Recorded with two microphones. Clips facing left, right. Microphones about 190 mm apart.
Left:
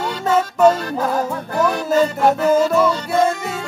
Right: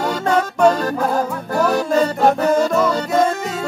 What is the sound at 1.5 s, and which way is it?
Music, 40° right (ahead or behind).